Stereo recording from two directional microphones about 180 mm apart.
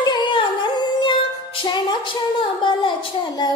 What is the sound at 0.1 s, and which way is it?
Humming, 25° left (ahead or behind).